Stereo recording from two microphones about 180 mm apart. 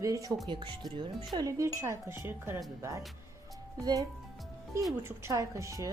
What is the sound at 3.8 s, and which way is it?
Speech, 20° right (ahead or behind).